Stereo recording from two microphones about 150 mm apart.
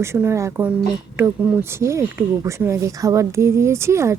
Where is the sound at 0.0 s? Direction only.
15° right (ahead or behind).